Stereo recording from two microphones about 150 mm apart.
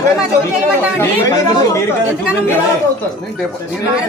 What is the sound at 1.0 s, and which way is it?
Speech, 20° left (ahead or behind).